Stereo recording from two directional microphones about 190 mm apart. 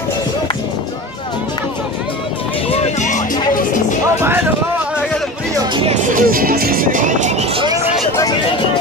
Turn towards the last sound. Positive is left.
turn(degrees=-40)  # may be behind; listen again after turning